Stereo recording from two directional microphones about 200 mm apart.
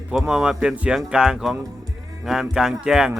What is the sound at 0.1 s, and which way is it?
Speech, 5° right (ahead or behind).